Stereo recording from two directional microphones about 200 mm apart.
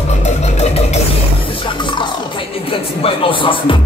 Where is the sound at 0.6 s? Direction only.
35° left (ahead or behind).